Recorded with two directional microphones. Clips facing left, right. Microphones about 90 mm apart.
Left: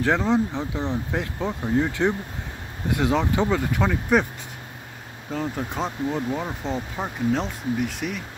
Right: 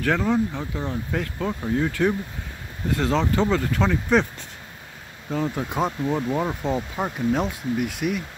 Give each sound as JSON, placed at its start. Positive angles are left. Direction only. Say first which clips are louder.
{"t": 0.0, "sound": "speech", "louder": "left 1 dB", "side_deg": 20}
{"t": 5.3, "sound": "speech", "louder": "right 2 dB", "side_deg": -5}